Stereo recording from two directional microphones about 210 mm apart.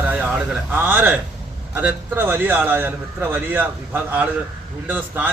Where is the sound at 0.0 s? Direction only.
10° right (ahead or behind).